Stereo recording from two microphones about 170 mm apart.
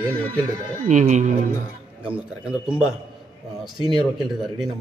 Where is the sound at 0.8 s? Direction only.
45° right (ahead or behind).